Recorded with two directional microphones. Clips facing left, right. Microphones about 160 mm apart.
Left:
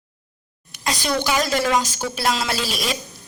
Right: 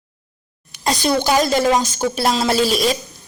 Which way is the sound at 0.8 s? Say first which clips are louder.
Right 5 dB; 40° right (ahead or behind).